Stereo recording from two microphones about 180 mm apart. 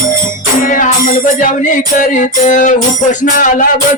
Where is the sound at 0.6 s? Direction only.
45° left (ahead or behind).